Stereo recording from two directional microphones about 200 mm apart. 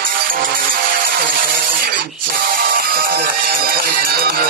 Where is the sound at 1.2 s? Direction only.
45° right (ahead or behind).